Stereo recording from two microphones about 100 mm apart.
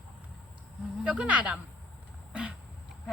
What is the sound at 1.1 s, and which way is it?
Speech, 15° right (ahead or behind).